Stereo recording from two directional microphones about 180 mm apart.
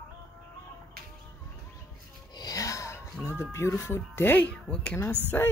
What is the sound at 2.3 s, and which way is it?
Music, 20° left (ahead or behind).